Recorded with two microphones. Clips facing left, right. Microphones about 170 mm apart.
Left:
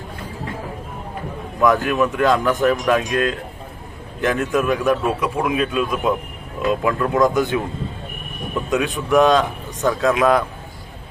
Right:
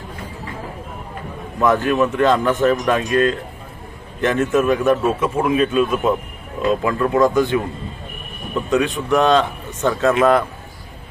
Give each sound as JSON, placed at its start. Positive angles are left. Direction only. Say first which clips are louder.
{"t": 1.6, "sound": "speech", "louder": "right 1 dB", "side_deg": 0}
{"t": 7.3, "sound": "speech", "louder": "right 2 dB", "side_deg": 20}
{"t": 8.7, "sound": "speech", "louder": "even", "side_deg": 0}